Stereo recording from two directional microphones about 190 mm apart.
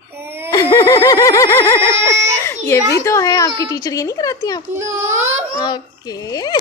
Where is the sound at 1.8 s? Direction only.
15° right (ahead or behind).